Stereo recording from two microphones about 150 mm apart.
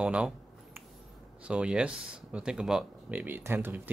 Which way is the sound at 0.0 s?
5° right (ahead or behind).